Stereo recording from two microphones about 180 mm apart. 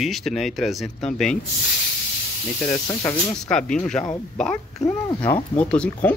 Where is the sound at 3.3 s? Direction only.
5° left (ahead or behind).